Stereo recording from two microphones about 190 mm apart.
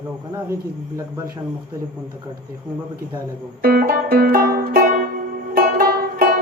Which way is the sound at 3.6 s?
55° right (ahead or behind).